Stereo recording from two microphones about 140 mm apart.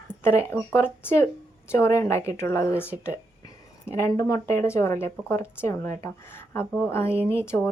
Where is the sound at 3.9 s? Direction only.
25° left (ahead or behind).